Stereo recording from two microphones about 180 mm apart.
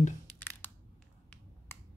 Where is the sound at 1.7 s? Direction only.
15° left (ahead or behind).